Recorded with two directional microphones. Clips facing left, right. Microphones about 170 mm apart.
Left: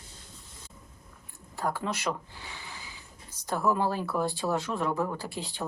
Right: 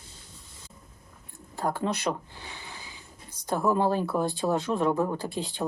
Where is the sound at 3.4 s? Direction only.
15° right (ahead or behind).